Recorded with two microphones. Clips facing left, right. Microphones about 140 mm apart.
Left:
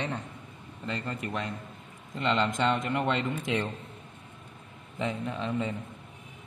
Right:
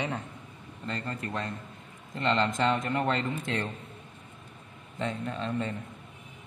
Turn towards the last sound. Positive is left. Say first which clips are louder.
# left 1 dB
turn(degrees=5)  # may be behind; listen again after turning